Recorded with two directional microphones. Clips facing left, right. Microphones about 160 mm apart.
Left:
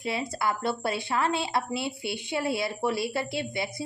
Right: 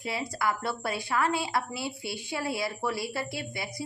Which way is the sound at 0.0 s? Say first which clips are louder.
Left 2 dB; 25° left (ahead or behind).